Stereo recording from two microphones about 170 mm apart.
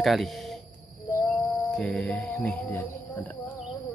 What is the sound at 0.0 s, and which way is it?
Speech, centre (ahead or behind).